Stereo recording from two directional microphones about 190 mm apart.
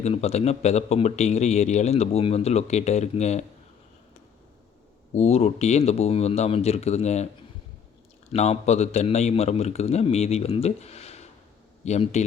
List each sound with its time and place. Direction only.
0.0 s speech: 35° left (ahead or behind)
5.1 s speech: 35° left (ahead or behind)
8.3 s speech: 35° left (ahead or behind)